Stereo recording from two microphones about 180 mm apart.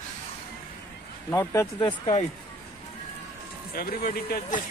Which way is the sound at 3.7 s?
55° left (ahead or behind).